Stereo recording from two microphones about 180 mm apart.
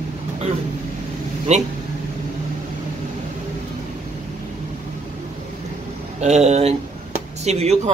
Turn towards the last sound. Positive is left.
turn(degrees=-35)  # may be behind; listen again after turning